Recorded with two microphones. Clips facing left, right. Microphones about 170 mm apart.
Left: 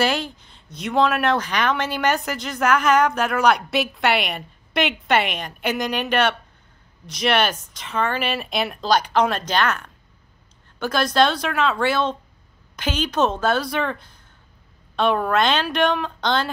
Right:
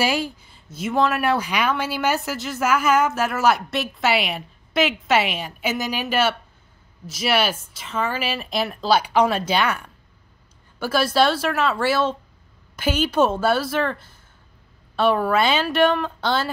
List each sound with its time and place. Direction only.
0.0 s a woman's voice: 10° right (ahead or behind)